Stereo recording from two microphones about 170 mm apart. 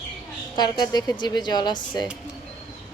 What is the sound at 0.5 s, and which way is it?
Speech, 25° left (ahead or behind).